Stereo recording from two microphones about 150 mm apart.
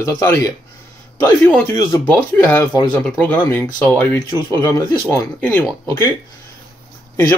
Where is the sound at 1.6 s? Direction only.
20° left (ahead or behind).